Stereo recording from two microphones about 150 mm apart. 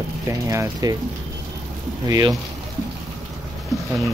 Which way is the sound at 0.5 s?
25° right (ahead or behind).